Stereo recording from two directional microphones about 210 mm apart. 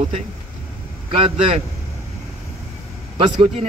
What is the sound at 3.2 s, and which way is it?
Speech, 30° right (ahead or behind).